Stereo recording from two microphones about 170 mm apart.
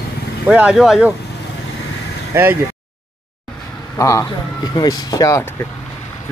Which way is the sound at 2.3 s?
15° right (ahead or behind).